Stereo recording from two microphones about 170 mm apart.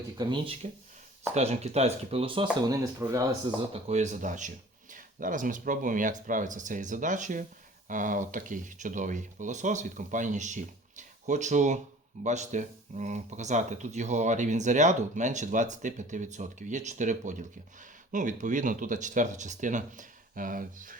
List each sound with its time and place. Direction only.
0.2 s speech: 25° right (ahead or behind)
1.3 s speech: 40° right (ahead or behind); by 3.2 s 20° right (ahead or behind)
3.7 s speech: 40° right (ahead or behind)